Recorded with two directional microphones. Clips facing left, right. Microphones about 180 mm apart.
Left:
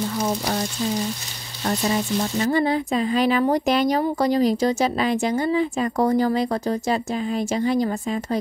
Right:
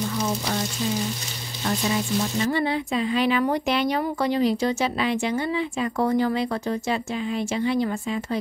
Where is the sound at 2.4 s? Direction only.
40° left (ahead or behind).